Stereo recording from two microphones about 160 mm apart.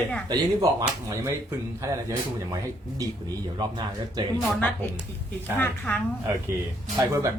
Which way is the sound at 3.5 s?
25° right (ahead or behind).